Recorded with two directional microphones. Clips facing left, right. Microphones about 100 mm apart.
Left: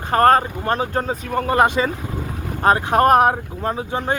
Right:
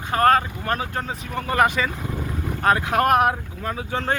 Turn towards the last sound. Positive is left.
turn(degrees=30)  # may be behind; listen again after turning